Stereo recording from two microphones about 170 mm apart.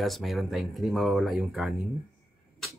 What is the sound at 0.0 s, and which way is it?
Speech, centre (ahead or behind).